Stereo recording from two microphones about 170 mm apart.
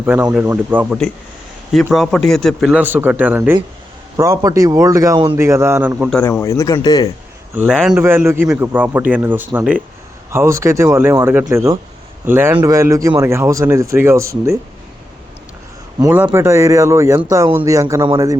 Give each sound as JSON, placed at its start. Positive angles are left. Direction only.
{"t": 0.0, "sound": "speech", "side_deg": -10}
{"t": 1.7, "sound": "a man's voice", "side_deg": 0}
{"t": 2.8, "sound": "a man's voice", "side_deg": -10}
{"t": 6.4, "sound": "speech", "side_deg": 20}
{"t": 7.5, "sound": "speech", "side_deg": -10}
{"t": 16.1, "sound": "a man's voice", "side_deg": -10}